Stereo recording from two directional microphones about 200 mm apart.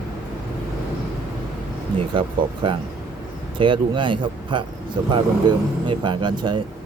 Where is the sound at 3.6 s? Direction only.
25° right (ahead or behind).